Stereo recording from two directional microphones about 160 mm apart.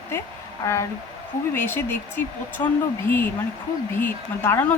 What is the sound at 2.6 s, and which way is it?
Speech, 25° left (ahead or behind).